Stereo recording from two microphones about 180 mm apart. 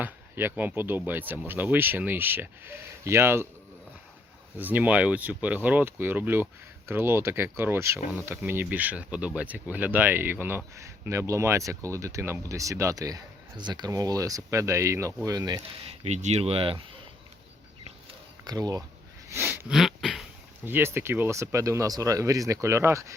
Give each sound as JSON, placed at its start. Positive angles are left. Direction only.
{"t": 0.0, "sound": "speech", "side_deg": -10}
{"t": 4.5, "sound": "speech", "side_deg": -10}
{"t": 15.9, "sound": "speech", "side_deg": -40}
{"t": 18.4, "sound": "speech", "side_deg": -20}
{"t": 19.3, "sound": "a sound", "side_deg": -10}
{"t": 20.7, "sound": "speech", "side_deg": -10}